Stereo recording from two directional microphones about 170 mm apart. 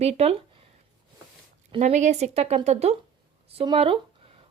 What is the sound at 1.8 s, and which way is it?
A woman's voice, 45° right (ahead or behind).